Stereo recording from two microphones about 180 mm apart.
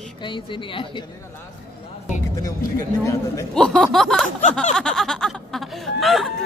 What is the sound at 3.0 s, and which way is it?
Speech, 15° left (ahead or behind).